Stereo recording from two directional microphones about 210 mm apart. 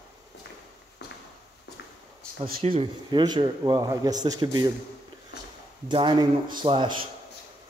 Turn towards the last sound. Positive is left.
turn(degrees=-25)  # may be behind; listen again after turning